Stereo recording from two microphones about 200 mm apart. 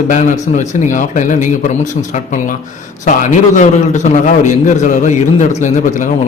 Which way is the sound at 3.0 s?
40° left (ahead or behind).